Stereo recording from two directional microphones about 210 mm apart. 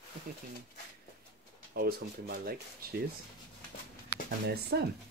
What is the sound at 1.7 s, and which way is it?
Speech, 45° right (ahead or behind).